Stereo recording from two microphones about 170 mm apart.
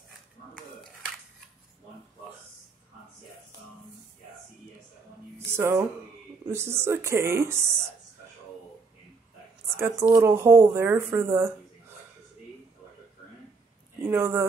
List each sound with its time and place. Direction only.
5.4 s music: 15° right (ahead or behind)
6.4 s speech: 15° right (ahead or behind)
9.8 s speech: 15° right (ahead or behind)
14.0 s speech: 15° right (ahead or behind)